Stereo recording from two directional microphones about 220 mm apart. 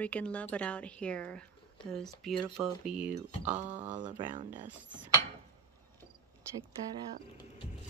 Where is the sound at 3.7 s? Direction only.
35° right (ahead or behind).